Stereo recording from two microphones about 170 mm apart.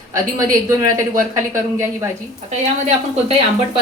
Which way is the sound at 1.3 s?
20° right (ahead or behind).